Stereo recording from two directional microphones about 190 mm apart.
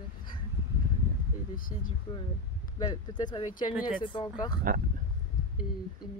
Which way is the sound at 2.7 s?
25° left (ahead or behind).